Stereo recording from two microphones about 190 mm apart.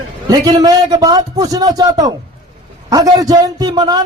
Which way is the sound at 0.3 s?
20° right (ahead or behind).